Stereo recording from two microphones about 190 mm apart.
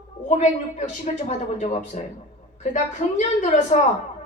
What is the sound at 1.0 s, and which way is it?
A woman's voice, 35° left (ahead or behind).